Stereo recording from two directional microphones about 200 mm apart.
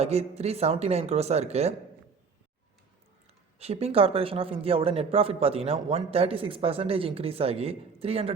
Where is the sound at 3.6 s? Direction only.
30° right (ahead or behind).